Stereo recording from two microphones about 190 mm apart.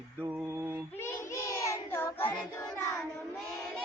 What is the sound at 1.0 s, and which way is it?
Child singing, 15° left (ahead or behind).